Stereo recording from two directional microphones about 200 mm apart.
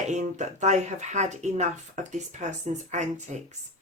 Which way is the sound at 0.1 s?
35° right (ahead or behind).